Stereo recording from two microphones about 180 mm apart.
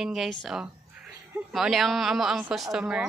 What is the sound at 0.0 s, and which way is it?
Speech, centre (ahead or behind).